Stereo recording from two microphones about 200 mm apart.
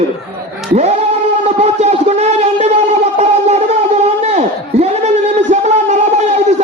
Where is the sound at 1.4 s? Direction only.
35° right (ahead or behind).